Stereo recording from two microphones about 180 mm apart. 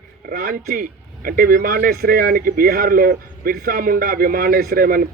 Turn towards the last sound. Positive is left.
turn(degrees=-55)  # may be behind; listen again after turning